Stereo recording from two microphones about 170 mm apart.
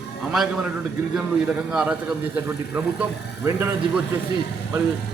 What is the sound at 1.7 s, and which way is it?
A man's voice, 5° right (ahead or behind).